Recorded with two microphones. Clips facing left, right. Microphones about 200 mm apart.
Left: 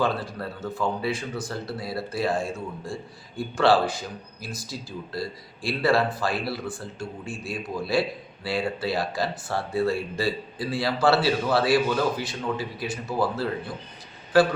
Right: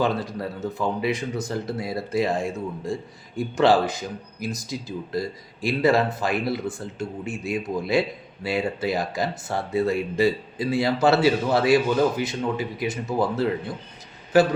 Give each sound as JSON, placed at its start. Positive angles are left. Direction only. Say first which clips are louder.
{"t": 0.0, "sound": "speech", "louder": "right 2 dB", "side_deg": -15}